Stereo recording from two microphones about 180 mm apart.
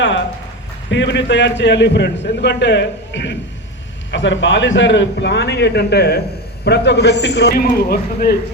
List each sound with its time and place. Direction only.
0.9 s a man's voice: 90° left
4.1 s a man's voice: 90° left; by 8.4 s 55° left (ahead or behind)